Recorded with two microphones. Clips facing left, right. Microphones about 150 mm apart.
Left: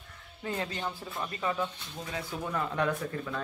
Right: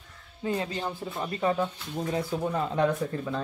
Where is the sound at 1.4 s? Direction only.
35° right (ahead or behind).